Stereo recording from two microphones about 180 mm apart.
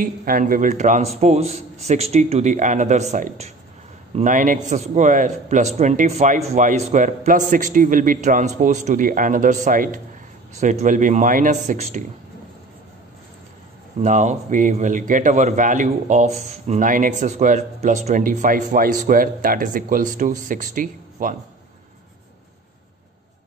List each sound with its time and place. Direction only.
0.0 s a man's voice: 50° right (ahead or behind)
14.0 s a man's voice: 40° right (ahead or behind)